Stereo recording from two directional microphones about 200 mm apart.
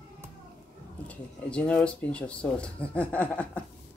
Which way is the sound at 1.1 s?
5° left (ahead or behind).